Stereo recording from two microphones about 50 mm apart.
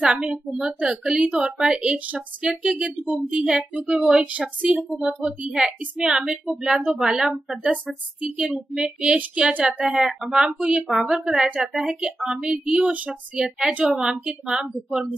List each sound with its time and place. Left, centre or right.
0.0 s a woman's voice: centre
4.0 s a woman's voice: centre
4.3 s speech: right
5.5 s a woman's voice: centre
9.8 s a woman's voice: centre
10.4 s speech: right
11.0 s a woman's voice: centre